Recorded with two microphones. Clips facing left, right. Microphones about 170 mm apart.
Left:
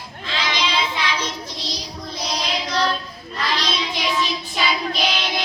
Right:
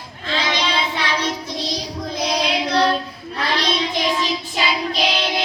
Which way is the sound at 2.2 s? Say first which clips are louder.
Right 5 dB; 60° right (ahead or behind).